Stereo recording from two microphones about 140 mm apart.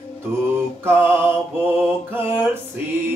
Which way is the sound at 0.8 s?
15° right (ahead or behind).